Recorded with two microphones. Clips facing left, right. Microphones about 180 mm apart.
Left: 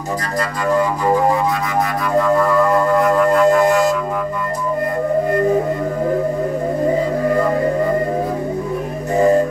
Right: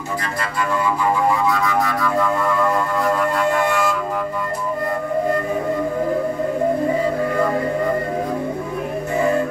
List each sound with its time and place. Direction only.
0.7 s music: 40° left (ahead or behind)
1.5 s music: 20° left (ahead or behind)
3.3 s music: 40° left (ahead or behind)
9.1 s music: 40° left (ahead or behind)